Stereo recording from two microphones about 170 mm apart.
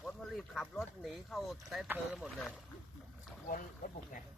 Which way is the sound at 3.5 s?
50° left (ahead or behind).